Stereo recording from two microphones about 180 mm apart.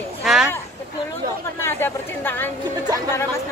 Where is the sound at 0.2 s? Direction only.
5° right (ahead or behind).